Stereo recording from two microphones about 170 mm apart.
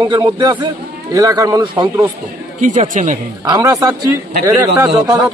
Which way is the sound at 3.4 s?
20° right (ahead or behind).